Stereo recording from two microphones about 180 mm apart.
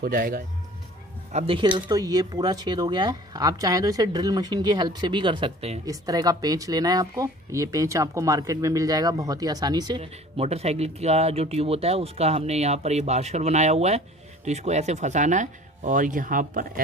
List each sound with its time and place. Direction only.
0.0 s speech: 55° right (ahead or behind)
1.3 s speech: 30° right (ahead or behind)
1.8 s speech: 20° right (ahead or behind)
5.9 s speech: 20° right (ahead or behind); by 16.8 s 50° right (ahead or behind)